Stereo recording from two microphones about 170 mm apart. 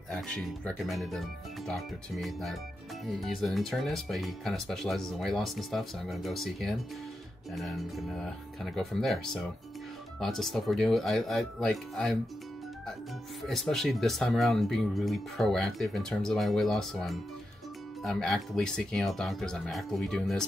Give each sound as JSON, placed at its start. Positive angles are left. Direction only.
{"t": 0.1, "sound": "speech", "side_deg": 5}
{"t": 13.4, "sound": "speech", "side_deg": 0}